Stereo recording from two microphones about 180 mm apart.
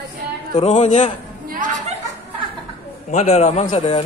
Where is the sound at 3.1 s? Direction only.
40° left (ahead or behind).